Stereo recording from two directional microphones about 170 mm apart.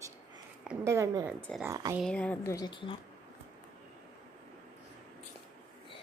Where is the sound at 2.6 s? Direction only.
30° left (ahead or behind).